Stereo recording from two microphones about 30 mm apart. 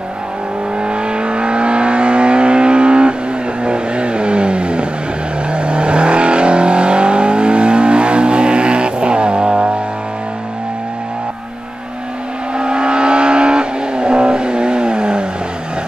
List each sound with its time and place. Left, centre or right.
0.8 s vehicle: right
12.5 s vehicle: right